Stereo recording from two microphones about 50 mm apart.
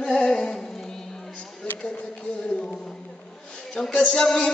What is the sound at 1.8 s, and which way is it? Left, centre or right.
Speech, centre.